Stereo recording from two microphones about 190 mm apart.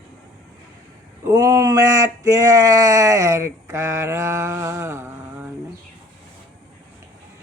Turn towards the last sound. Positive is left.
turn(degrees=-15)  # may be behind; listen again after turning